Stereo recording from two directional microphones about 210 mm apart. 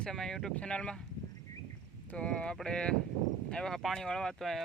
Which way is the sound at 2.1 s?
5° left (ahead or behind).